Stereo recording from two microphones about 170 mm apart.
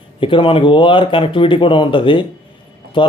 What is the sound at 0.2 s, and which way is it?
Speech, 30° left (ahead or behind).